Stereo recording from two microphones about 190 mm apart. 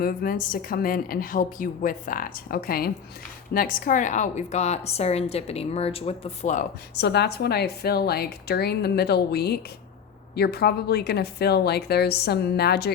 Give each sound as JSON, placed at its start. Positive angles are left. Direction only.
{"t": 0.0, "sound": "a woman's voice", "side_deg": 50}
{"t": 6.9, "sound": "a woman's voice", "side_deg": 60}